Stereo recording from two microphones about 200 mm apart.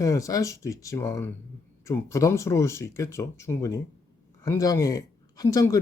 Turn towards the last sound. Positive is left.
turn(degrees=15)  # may be behind; listen again after turning